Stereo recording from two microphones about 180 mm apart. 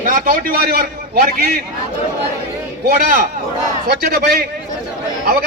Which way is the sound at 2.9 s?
55° right (ahead or behind).